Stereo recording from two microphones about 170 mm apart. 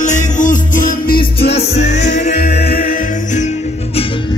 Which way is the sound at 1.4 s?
35° left (ahead or behind).